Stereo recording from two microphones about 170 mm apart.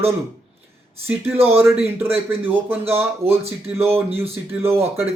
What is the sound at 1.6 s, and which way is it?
Speech, centre (ahead or behind).